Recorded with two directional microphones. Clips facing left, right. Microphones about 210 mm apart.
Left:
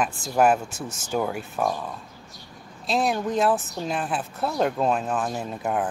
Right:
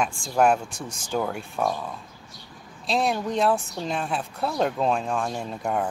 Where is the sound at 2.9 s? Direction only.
Centre (ahead or behind).